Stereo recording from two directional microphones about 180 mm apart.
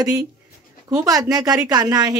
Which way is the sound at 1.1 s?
20° right (ahead or behind).